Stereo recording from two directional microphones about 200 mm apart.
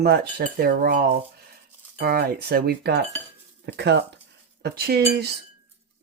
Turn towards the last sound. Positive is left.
turn(degrees=-50)  # may be behind; listen again after turning